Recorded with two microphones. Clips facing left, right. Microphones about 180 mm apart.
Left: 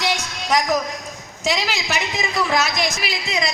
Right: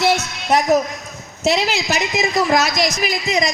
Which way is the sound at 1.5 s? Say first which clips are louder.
Right 5 dB; 40° right (ahead or behind).